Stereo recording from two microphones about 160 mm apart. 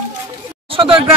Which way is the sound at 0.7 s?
35° right (ahead or behind).